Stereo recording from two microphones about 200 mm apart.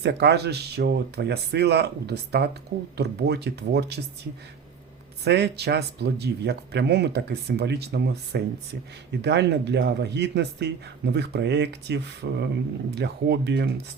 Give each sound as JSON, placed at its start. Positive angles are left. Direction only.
{"t": 0.0, "sound": "speech", "side_deg": -55}
{"t": 5.2, "sound": "speech", "side_deg": -55}